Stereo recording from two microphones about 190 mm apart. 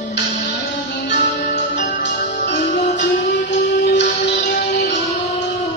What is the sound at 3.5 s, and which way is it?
Music, 65° left (ahead or behind).